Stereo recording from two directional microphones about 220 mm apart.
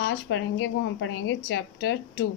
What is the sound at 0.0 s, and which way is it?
A woman's voice, 55° left (ahead or behind).